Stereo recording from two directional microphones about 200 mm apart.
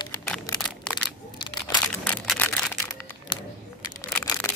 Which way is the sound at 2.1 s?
5° left (ahead or behind).